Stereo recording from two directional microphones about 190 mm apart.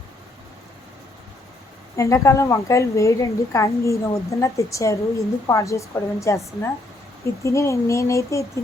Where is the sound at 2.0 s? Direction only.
15° left (ahead or behind).